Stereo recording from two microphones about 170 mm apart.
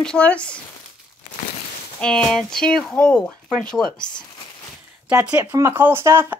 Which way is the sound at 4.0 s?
25° left (ahead or behind).